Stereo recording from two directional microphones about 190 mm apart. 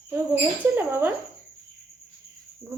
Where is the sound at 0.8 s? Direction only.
10° right (ahead or behind).